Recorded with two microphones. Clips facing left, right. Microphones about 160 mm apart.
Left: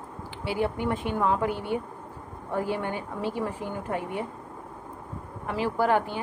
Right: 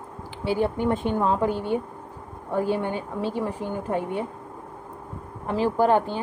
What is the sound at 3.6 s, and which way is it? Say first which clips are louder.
Speech: right 4 dB; 20° right (ahead or behind).